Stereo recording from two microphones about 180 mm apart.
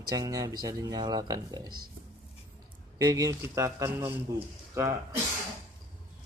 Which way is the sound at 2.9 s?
20° right (ahead or behind).